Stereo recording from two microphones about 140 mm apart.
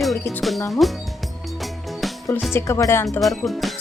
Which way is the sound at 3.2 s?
Centre (ahead or behind).